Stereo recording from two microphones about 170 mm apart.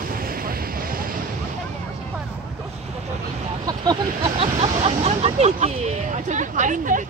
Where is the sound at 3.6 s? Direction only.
25° right (ahead or behind).